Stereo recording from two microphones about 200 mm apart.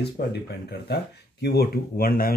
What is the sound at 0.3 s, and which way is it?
Speech, 55° left (ahead or behind).